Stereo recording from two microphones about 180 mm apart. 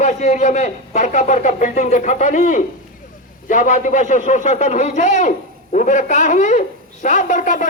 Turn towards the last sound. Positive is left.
turn(degrees=45)  # may be behind; listen again after turning